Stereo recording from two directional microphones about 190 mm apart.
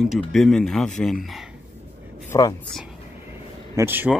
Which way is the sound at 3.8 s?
10° right (ahead or behind).